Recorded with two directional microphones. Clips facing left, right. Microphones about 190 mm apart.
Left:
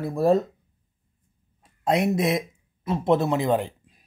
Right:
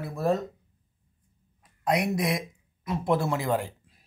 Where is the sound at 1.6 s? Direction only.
25° left (ahead or behind).